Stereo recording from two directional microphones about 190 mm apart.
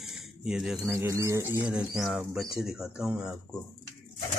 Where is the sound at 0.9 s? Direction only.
15° right (ahead or behind).